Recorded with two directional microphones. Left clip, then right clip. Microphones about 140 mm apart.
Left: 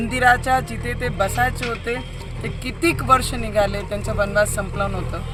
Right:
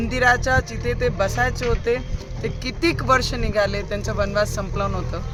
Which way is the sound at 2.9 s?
Centre (ahead or behind).